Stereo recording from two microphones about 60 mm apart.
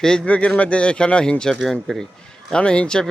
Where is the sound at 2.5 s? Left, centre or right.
Centre.